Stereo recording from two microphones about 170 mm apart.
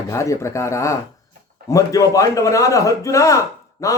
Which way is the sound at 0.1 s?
15° left (ahead or behind).